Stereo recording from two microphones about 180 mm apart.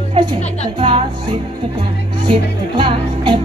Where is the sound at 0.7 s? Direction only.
30° right (ahead or behind).